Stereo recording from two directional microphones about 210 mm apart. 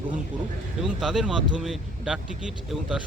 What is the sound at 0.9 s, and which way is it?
Speech, centre (ahead or behind).